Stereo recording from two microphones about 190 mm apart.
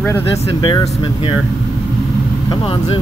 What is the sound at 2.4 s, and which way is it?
Speech, 25° left (ahead or behind).